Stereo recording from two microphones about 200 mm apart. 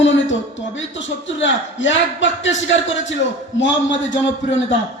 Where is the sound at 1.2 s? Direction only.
65° left (ahead or behind).